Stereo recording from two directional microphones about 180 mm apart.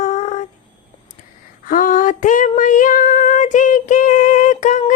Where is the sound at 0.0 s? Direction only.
40° left (ahead or behind).